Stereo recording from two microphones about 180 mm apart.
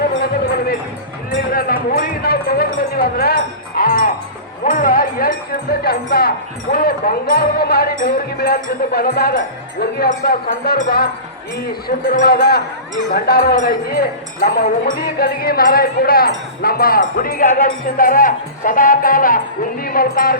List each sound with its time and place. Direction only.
0.2 s music: 60° left (ahead or behind)
1.5 s a sound: 55° left (ahead or behind)
2.9 s music: 60° left (ahead or behind)
5.8 s speech: 60° left (ahead or behind)